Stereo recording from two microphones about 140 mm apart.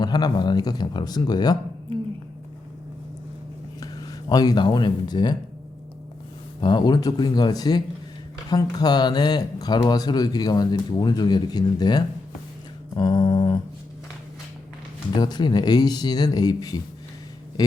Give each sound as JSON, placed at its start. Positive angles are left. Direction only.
{"t": 0.0, "sound": "speech", "side_deg": 30}
{"t": 1.9, "sound": "a sound", "side_deg": -40}
{"t": 3.8, "sound": "speech", "side_deg": 25}
{"t": 6.6, "sound": "speech", "side_deg": 30}
{"t": 13.0, "sound": "a sound", "side_deg": 30}
{"t": 15.1, "sound": "speech", "side_deg": 30}